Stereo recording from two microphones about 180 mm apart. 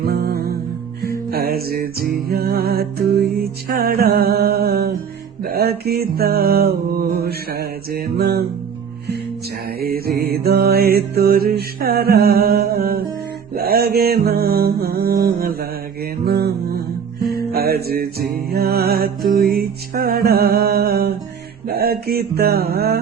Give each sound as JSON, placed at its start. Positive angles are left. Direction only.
{"t": 0.0, "sound": "music", "side_deg": -60}
{"t": 9.8, "sound": "mantra", "side_deg": -55}
{"t": 13.5, "sound": "music", "side_deg": -55}
{"t": 21.7, "sound": "mantra", "side_deg": -60}